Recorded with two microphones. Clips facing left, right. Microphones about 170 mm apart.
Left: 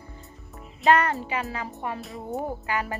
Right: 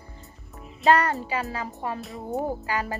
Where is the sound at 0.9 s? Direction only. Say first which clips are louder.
Even; 35° right (ahead or behind).